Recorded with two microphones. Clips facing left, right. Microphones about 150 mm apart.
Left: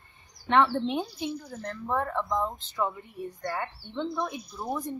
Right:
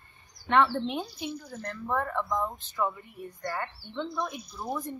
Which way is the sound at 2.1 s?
15° left (ahead or behind).